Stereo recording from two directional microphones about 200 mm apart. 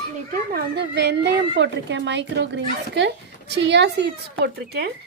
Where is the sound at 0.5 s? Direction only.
55° right (ahead or behind).